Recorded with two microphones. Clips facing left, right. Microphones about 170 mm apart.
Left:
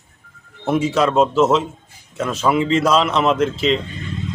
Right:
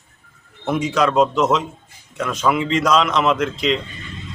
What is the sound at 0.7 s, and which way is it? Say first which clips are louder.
Speech: left 4 dB; 30° left (ahead or behind).